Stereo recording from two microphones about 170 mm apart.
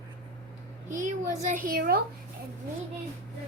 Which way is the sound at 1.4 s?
50° right (ahead or behind).